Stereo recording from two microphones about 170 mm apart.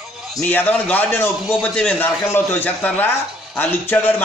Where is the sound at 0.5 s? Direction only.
10° left (ahead or behind).